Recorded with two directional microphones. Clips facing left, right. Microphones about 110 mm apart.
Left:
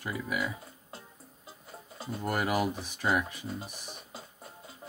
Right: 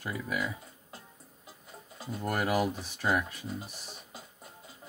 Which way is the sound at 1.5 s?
30° left (ahead or behind).